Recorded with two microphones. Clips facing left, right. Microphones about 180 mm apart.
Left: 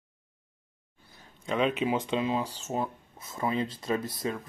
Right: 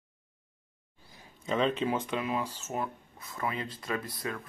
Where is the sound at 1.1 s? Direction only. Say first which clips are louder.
Right 1 dB; 10° right (ahead or behind).